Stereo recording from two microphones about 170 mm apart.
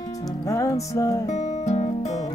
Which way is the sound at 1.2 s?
40° left (ahead or behind).